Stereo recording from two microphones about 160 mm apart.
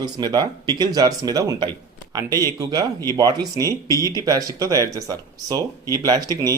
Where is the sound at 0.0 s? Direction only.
25° right (ahead or behind).